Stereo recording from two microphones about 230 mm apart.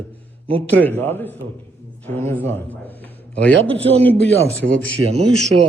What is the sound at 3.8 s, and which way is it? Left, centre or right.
Speech, right.